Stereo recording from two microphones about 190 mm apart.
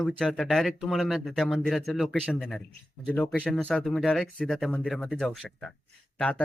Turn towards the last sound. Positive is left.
turn(degrees=5)  # may be behind; listen again after turning